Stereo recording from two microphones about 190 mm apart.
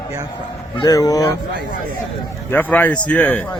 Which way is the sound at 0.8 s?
20° left (ahead or behind).